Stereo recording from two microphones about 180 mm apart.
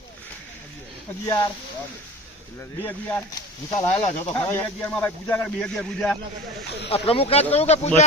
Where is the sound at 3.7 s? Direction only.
20° left (ahead or behind).